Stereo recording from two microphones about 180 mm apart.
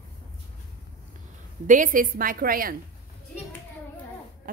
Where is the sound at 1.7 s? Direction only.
50° right (ahead or behind).